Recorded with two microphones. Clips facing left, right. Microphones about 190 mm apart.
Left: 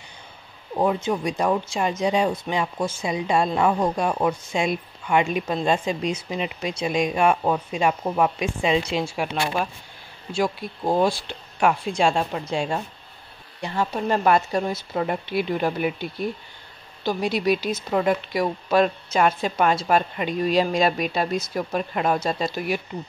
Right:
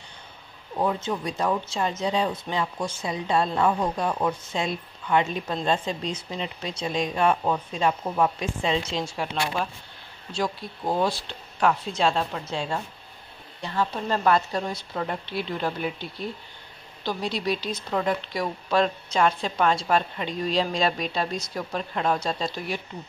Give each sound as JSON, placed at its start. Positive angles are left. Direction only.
{"t": 1.2, "sound": "speech", "side_deg": 15}
{"t": 10.9, "sound": "speech", "side_deg": 15}